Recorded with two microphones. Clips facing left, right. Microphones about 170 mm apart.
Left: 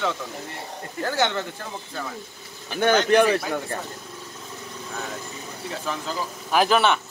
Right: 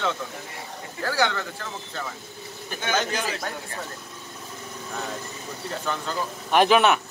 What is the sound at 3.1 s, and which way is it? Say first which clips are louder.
Speech: left 12 dB; 60° left (ahead or behind).